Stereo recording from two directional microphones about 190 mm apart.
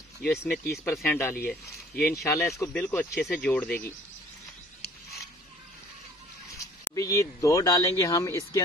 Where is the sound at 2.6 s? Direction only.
10° left (ahead or behind).